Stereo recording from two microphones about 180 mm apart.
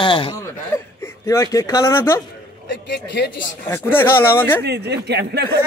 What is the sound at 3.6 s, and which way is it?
Speech, 15° left (ahead or behind).